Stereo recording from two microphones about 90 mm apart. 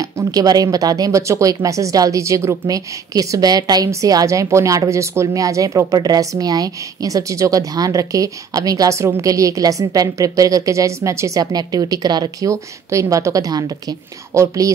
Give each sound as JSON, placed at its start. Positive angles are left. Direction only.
{"t": 0.0, "sound": "speech", "side_deg": -40}